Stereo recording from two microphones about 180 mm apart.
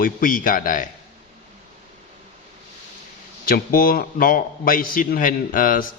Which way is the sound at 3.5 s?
55° left (ahead or behind).